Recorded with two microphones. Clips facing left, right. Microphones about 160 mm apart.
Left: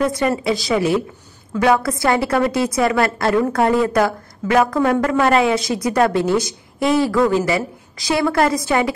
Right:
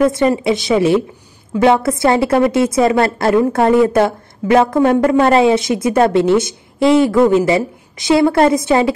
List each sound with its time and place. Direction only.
0.0 s a woman's voice: 25° right (ahead or behind)